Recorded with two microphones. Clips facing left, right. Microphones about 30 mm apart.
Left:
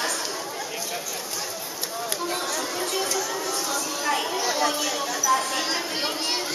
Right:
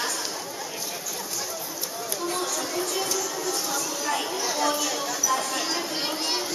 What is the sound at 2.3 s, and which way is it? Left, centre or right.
Chatter, centre.